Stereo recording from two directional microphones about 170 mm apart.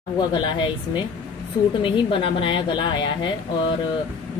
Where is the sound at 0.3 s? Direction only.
25° left (ahead or behind).